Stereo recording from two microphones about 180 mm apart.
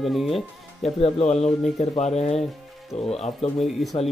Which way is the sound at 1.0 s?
35° left (ahead or behind).